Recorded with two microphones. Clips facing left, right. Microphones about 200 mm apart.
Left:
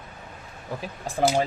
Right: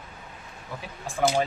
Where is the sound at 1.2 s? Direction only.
35° left (ahead or behind).